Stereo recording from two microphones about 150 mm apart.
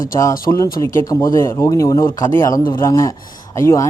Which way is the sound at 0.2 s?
20° left (ahead or behind).